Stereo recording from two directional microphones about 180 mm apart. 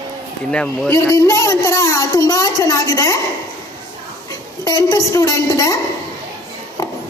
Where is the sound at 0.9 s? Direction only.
15° left (ahead or behind).